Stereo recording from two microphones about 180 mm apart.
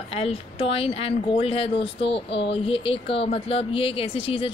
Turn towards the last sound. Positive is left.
turn(degrees=30)  # may be behind; listen again after turning